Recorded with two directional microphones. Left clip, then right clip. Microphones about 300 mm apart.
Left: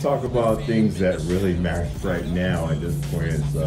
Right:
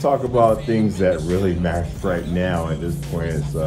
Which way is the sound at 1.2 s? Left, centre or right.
Centre.